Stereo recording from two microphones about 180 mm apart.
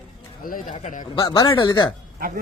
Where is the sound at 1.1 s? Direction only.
25° left (ahead or behind).